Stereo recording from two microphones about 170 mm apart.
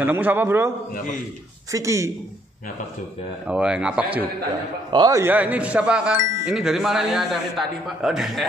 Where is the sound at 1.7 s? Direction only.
15° right (ahead or behind).